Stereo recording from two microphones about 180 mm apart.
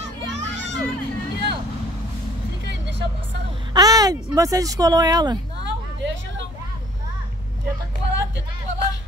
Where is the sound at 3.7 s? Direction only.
20° right (ahead or behind).